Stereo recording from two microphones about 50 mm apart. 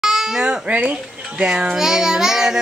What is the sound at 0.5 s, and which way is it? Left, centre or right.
Speech, right.